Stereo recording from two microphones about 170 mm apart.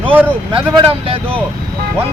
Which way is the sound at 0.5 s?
35° right (ahead or behind).